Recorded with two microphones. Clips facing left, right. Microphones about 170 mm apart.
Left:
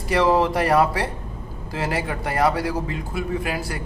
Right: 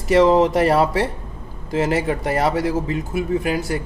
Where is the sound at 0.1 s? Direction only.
20° right (ahead or behind).